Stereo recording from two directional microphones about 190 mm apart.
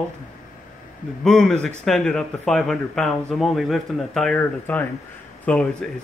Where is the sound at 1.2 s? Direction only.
5° left (ahead or behind).